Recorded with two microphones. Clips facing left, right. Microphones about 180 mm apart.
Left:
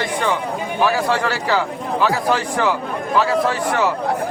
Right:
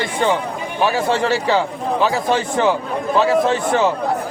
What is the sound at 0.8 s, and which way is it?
Speech, 25° right (ahead or behind).